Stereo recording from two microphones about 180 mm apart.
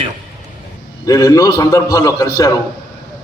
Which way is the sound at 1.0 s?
15° left (ahead or behind).